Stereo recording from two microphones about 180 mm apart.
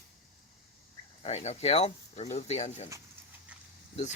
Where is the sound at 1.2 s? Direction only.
35° left (ahead or behind).